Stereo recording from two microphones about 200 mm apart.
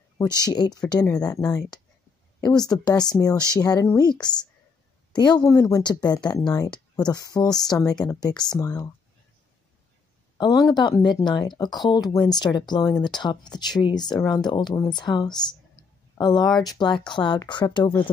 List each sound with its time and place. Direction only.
0.5 s speech: 20° left (ahead or behind)
2.4 s speech: 20° left (ahead or behind)
10.3 s speech: 20° left (ahead or behind)